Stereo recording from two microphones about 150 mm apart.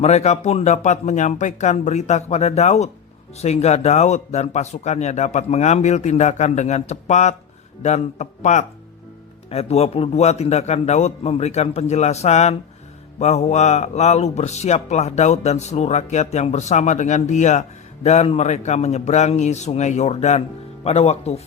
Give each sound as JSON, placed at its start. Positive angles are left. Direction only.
{"t": 0.0, "sound": "speech", "side_deg": 45}